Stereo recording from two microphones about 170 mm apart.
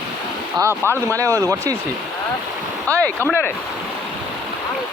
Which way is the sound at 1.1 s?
20° right (ahead or behind).